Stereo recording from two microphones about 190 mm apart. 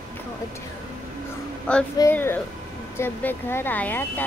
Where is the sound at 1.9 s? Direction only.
15° left (ahead or behind).